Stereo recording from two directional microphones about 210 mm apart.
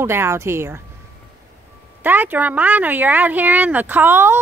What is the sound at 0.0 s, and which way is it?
Speech, 10° right (ahead or behind).